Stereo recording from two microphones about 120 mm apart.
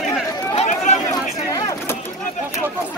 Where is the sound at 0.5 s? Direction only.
80° left.